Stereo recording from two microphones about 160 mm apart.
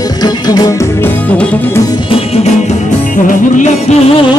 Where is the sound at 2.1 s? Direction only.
40° left (ahead or behind).